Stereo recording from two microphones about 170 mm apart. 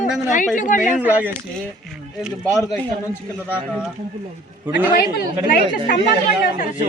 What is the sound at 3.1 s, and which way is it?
Speech, 10° left (ahead or behind).